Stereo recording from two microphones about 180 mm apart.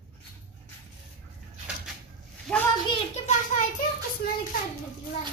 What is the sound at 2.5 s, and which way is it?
Speech, 5° left (ahead or behind).